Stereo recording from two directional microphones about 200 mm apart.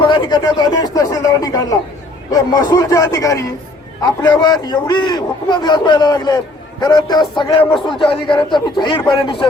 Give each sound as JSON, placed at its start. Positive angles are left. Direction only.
{"t": 0.1, "sound": "a man's voice", "side_deg": 20}